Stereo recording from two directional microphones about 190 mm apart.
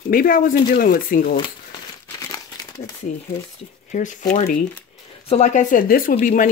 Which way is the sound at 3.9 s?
40° left (ahead or behind).